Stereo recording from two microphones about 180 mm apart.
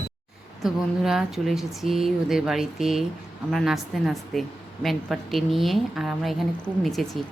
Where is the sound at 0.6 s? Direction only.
Centre (ahead or behind).